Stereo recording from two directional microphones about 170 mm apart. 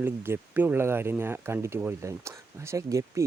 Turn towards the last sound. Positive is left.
turn(degrees=-20)  # may be behind; listen again after turning